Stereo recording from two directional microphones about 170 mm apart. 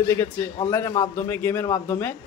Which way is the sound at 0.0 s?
15° left (ahead or behind).